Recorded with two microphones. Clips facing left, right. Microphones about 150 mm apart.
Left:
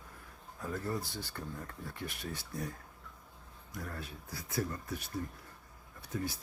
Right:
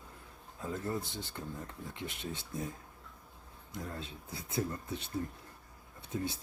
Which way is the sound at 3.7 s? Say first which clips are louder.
Right 1 dB; 20° right (ahead or behind).